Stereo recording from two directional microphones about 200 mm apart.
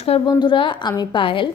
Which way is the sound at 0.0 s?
25° left (ahead or behind).